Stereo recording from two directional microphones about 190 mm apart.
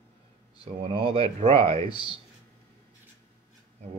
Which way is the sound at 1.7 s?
25° left (ahead or behind).